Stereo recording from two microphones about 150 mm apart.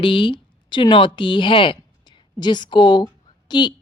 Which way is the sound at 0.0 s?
35° left (ahead or behind).